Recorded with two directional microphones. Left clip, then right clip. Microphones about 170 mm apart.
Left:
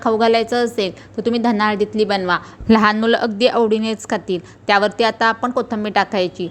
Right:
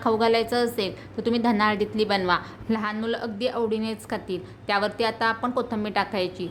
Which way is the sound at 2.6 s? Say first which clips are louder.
Left 17 dB; 55° left (ahead or behind).